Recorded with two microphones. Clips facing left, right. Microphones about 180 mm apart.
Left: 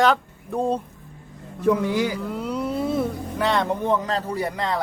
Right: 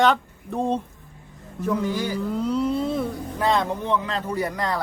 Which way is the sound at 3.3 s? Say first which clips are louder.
Even; 75° left (ahead or behind).